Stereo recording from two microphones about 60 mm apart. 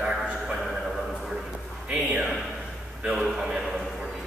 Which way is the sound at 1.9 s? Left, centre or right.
Centre.